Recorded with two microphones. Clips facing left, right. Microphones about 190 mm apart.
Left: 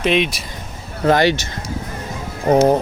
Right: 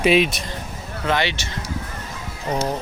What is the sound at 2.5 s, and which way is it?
Speech, 50° left (ahead or behind).